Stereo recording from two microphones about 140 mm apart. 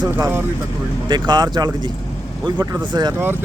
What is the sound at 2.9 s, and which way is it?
Speech, 30° right (ahead or behind).